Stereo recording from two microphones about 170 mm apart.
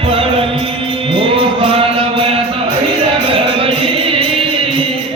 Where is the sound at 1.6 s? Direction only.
30° right (ahead or behind).